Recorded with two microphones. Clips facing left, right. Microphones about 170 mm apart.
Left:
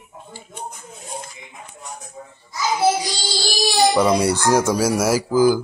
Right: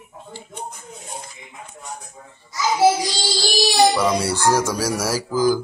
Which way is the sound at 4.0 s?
15° left (ahead or behind).